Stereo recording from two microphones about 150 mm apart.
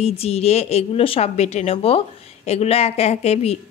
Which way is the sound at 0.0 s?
45° left (ahead or behind).